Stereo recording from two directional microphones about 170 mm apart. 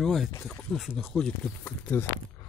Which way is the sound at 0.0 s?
Centre (ahead or behind).